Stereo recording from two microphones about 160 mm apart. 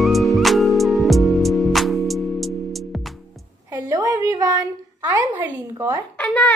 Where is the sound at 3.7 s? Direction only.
20° right (ahead or behind).